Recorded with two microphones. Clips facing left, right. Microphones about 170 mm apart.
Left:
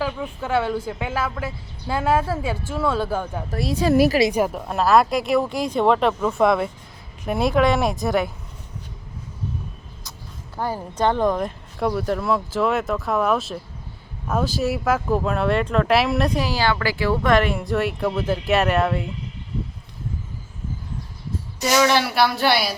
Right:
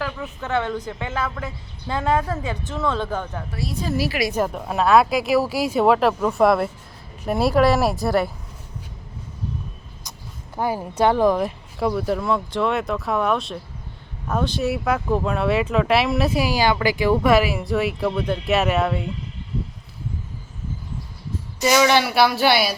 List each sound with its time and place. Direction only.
0.0 s a woman's voice: 10° left (ahead or behind)
3.6 s a woman's voice: 80° left
3.9 s a woman's voice: 50° left (ahead or behind)
4.3 s a woman's voice: 10° left (ahead or behind)
4.7 s speech: centre (ahead or behind)
10.6 s speech: 10° right (ahead or behind)
21.6 s speech: centre (ahead or behind)